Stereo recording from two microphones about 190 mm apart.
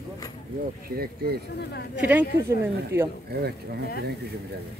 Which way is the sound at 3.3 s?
55° right (ahead or behind).